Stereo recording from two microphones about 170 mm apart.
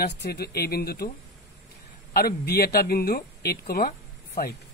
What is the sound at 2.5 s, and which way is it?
Speech, 65° left (ahead or behind).